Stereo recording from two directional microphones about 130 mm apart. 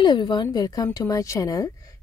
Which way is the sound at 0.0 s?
35° left (ahead or behind).